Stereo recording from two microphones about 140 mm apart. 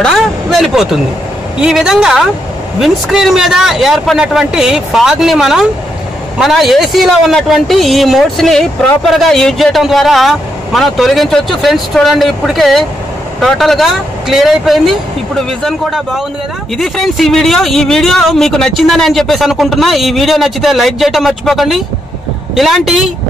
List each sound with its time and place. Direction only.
0.0 s a man's voice: centre (ahead or behind)